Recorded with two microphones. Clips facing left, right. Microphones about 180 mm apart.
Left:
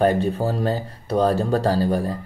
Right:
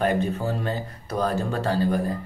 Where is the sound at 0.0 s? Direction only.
35° left (ahead or behind).